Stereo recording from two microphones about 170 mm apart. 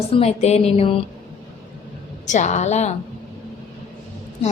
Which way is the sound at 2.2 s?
45° left (ahead or behind).